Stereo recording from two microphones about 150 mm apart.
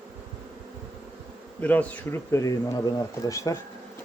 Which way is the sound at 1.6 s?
10° left (ahead or behind).